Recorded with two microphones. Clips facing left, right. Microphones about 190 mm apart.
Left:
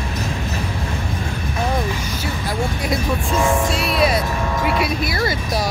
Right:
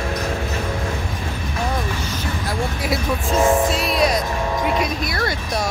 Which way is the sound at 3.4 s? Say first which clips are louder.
Right 3 dB; 15° right (ahead or behind).